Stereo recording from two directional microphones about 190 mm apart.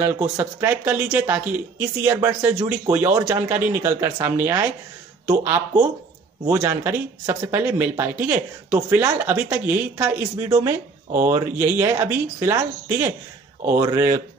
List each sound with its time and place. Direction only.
0.0 s speech: 10° right (ahead or behind)